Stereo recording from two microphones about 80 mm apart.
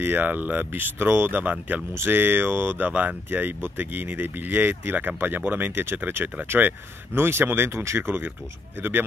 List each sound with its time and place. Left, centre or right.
0.0 s speech: right